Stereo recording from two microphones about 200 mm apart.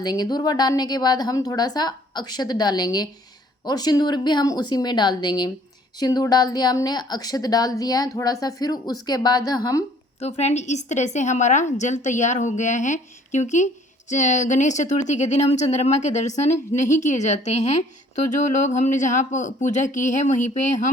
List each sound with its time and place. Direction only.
0.0 s speech: 20° left (ahead or behind)
10.2 s a woman's voice: 35° left (ahead or behind)